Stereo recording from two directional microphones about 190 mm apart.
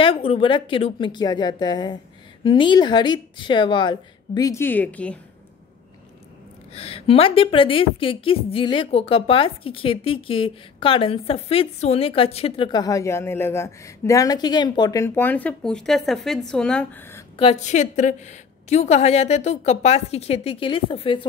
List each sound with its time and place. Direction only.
0.0 s a woman's voice: 30° left (ahead or behind); by 5.2 s 5° left (ahead or behind)
6.7 s a woman's voice: 30° left (ahead or behind); by 17.2 s 10° left (ahead or behind)
17.4 s a woman's voice: 35° left (ahead or behind)